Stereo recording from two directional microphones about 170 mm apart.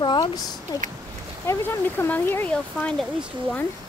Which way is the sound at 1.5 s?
10° left (ahead or behind).